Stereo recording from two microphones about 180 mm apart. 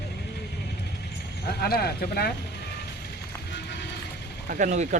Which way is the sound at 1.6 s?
60° left (ahead or behind).